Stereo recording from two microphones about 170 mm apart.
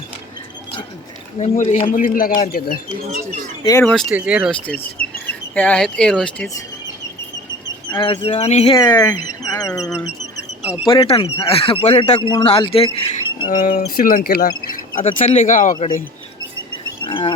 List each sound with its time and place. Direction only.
1.4 s speech: 40° left (ahead or behind)
1.9 s speech: 50° left (ahead or behind)
3.6 s speech: 20° left (ahead or behind)
4.1 s speech: 5° right (ahead or behind)
4.6 s speech: 10° left (ahead or behind)
7.9 s speech: 30° left (ahead or behind)
8.6 s speech: 25° left (ahead or behind)
10.8 s speech: 30° left (ahead or behind)
13.5 s speech: 55° left (ahead or behind)
17.0 s a sound: 30° left (ahead or behind)